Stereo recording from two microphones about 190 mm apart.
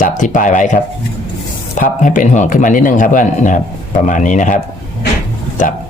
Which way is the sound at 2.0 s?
40° left (ahead or behind).